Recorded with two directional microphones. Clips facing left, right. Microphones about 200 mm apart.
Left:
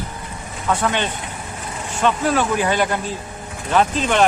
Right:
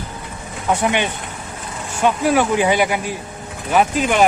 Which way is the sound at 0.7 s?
15° right (ahead or behind).